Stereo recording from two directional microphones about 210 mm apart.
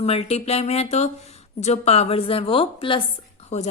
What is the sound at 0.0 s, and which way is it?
A woman's voice, 30° left (ahead or behind).